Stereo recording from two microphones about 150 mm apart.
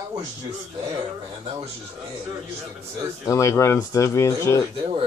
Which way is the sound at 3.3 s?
20° left (ahead or behind).